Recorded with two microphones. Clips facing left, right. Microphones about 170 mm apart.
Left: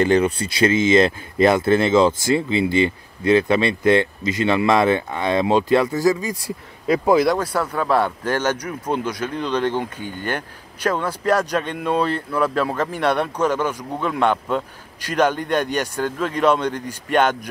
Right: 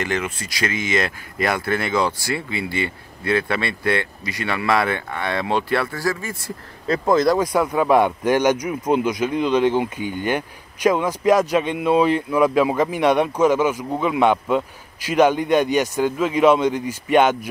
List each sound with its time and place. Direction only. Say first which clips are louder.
0.0 s speech: left 8 dB; 30° left (ahead or behind); by 7.3 s 10° left (ahead or behind)
7.3 s speech: right 4 dB; 10° right (ahead or behind)